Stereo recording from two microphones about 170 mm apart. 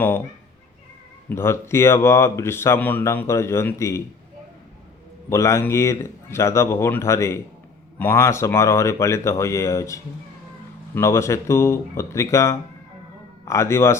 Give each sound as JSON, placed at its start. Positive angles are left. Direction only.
{"t": 1.3, "sound": "speech", "side_deg": 15}
{"t": 5.3, "sound": "speech", "side_deg": 15}